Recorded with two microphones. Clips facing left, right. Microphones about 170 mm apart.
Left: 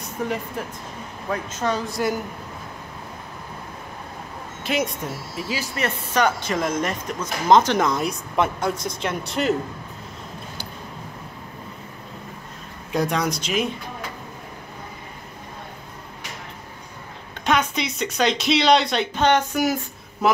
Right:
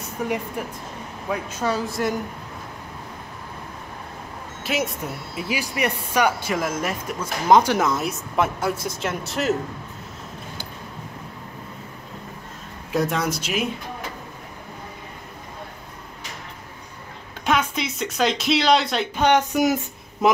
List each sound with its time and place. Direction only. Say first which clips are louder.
0.2 s speech: right 1 dB; 10° right (ahead or behind)
4.6 s speech: left 1 dB; 5° right (ahead or behind)
12.9 s speech: even; 5° right (ahead or behind)
17.5 s speech: left 1 dB; 5° right (ahead or behind)
19.2 s speech: right 2 dB; 15° right (ahead or behind)